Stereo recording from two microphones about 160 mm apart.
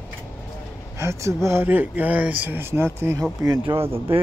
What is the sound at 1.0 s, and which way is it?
Speech, 20° right (ahead or behind).